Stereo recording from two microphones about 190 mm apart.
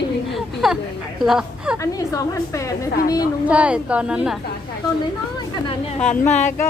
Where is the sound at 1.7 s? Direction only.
15° left (ahead or behind).